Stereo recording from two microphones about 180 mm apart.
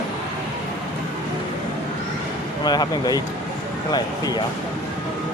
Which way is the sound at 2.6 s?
25° left (ahead or behind).